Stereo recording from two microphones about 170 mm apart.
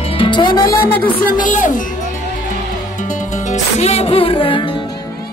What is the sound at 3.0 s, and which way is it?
Music, 45° left (ahead or behind).